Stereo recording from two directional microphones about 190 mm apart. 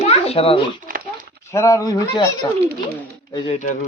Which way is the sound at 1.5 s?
15° left (ahead or behind).